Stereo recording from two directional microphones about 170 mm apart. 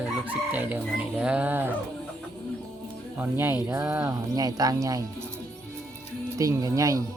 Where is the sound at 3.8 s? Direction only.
10° right (ahead or behind).